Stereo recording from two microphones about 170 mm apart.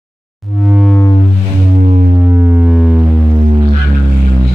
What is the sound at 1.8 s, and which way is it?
Music, 45° right (ahead or behind).